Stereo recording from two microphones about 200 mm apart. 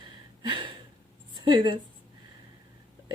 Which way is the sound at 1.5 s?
20° right (ahead or behind).